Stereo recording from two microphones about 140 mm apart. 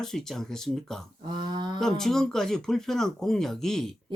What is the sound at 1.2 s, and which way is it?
Speech, 35° right (ahead or behind).